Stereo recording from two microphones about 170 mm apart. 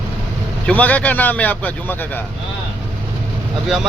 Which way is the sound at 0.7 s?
10° left (ahead or behind).